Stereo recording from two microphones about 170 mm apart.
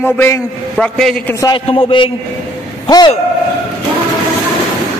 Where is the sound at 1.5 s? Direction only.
30° left (ahead or behind).